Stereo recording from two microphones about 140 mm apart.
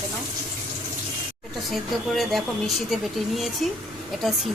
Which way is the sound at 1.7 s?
Centre (ahead or behind).